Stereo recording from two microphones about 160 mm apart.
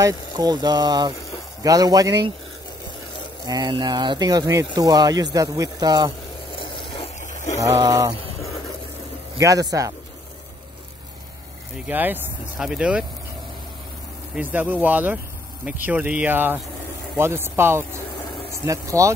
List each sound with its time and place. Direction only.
0.0 s speech: 25° right (ahead or behind)
3.4 s speech: 25° right (ahead or behind)
6.5 s a sound: 30° left (ahead or behind)
7.2 s a sound: 50° left (ahead or behind)
7.5 s speech: 20° right (ahead or behind)
11.9 s speech: 10° right (ahead or behind)
14.3 s speech: 10° right (ahead or behind)